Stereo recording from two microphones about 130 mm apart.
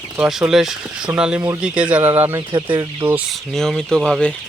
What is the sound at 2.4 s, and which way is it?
Speech, 35° right (ahead or behind).